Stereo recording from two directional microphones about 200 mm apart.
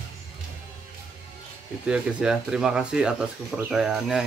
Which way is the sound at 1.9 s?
5° right (ahead or behind).